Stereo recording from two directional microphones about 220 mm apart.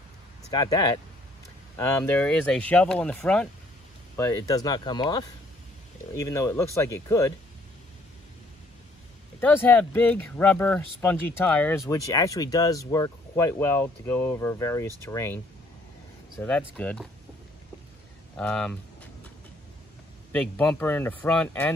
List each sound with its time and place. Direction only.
0.5 s speech: 15° left (ahead or behind)
9.4 s speech: 10° left (ahead or behind)
18.3 s speech: 5° left (ahead or behind)
20.3 s speech: 5° left (ahead or behind)